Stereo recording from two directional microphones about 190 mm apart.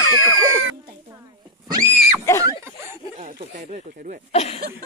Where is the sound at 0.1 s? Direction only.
90° right.